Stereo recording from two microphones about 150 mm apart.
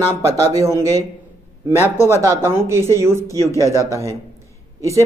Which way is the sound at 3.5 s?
20° left (ahead or behind).